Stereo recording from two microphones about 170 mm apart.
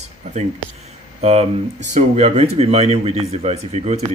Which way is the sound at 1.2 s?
40° right (ahead or behind).